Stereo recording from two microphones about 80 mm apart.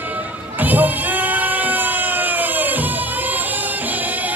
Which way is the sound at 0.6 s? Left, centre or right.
Right.